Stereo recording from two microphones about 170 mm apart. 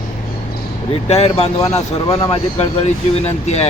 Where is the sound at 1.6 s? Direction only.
20° left (ahead or behind).